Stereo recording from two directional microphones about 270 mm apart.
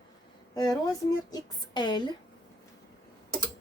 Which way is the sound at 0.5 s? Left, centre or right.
Centre.